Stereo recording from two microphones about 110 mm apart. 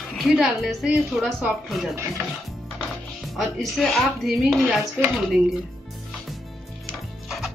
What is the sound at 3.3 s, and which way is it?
Speech, centre (ahead or behind).